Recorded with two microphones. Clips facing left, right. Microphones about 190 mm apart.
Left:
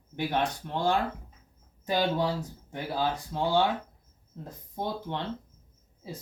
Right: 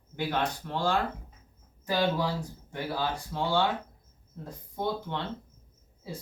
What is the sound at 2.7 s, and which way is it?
Speech, 20° left (ahead or behind).